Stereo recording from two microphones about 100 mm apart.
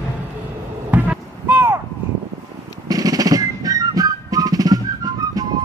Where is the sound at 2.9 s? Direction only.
35° right (ahead or behind).